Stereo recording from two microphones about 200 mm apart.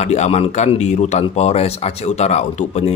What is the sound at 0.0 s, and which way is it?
Speech, 35° left (ahead or behind).